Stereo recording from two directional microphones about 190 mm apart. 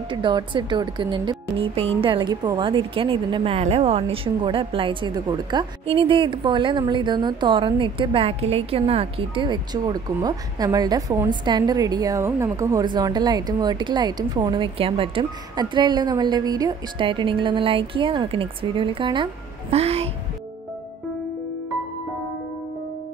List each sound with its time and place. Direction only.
0.1 s speech: 25° right (ahead or behind)